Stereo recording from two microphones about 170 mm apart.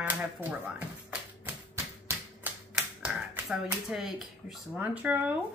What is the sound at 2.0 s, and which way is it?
Typewriter, 10° right (ahead or behind).